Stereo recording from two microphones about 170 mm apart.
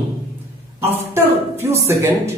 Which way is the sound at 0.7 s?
15° right (ahead or behind).